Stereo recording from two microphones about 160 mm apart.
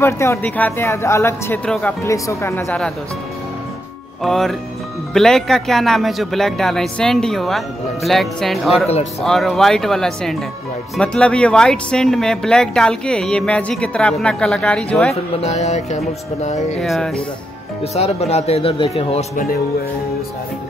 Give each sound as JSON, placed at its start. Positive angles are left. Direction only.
{"t": 0.0, "sound": "speech", "side_deg": 15}
{"t": 2.0, "sound": "speech", "side_deg": 20}
{"t": 4.2, "sound": "speech", "side_deg": 0}
{"t": 15.4, "sound": "music", "side_deg": 45}
{"t": 16.8, "sound": "speech", "side_deg": 0}
{"t": 17.9, "sound": "speech", "side_deg": 40}